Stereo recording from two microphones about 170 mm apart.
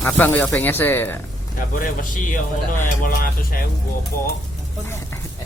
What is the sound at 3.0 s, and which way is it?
Speech, 55° left (ahead or behind).